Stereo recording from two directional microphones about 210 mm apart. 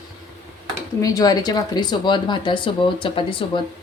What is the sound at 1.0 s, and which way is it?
Speech, 15° left (ahead or behind).